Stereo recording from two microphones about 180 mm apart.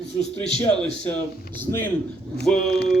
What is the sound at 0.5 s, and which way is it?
Music, 5° left (ahead or behind).